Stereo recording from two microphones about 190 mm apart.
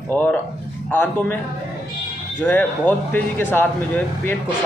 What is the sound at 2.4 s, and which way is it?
A man's voice, 10° left (ahead or behind).